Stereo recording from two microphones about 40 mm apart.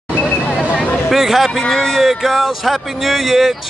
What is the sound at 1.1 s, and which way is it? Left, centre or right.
Speech, centre.